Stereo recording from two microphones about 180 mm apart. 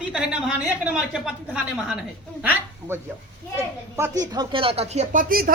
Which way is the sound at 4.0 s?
15° right (ahead or behind).